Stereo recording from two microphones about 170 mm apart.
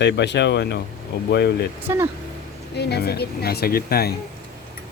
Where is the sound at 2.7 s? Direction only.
75° left (ahead or behind).